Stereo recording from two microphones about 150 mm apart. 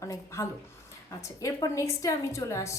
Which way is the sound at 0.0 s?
20° left (ahead or behind).